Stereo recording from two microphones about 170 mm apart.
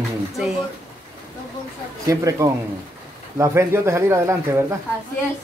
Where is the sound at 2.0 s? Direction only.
20° right (ahead or behind).